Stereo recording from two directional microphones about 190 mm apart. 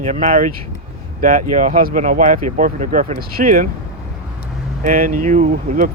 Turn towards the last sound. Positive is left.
turn(degrees=-45)  # may be behind; listen again after turning